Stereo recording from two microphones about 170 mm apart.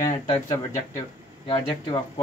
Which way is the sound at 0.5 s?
15° left (ahead or behind).